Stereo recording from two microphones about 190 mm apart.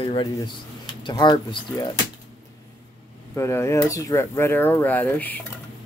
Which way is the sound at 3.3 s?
15° left (ahead or behind).